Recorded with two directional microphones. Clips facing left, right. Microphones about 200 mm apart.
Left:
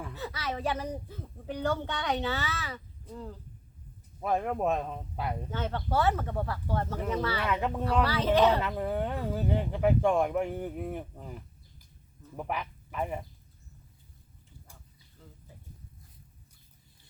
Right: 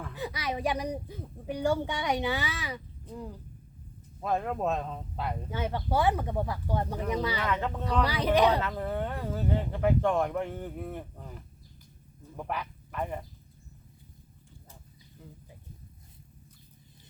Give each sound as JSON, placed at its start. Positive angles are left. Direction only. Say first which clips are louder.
{"t": 0.1, "sound": "speech", "louder": "right 4 dB", "side_deg": -15}
{"t": 4.2, "sound": "speech", "louder": "left 1 dB", "side_deg": 10}
{"t": 5.5, "sound": "speech", "louder": "right 4 dB", "side_deg": -10}
{"t": 7.4, "sound": "speech", "louder": "left 1 dB", "side_deg": 10}
{"t": 8.0, "sound": "speech", "louder": "even", "side_deg": -15}
{"t": 8.6, "sound": "speech", "louder": "left 1 dB", "side_deg": 10}
{"t": 15.2, "sound": "a sound", "louder": "right 4 dB", "side_deg": -10}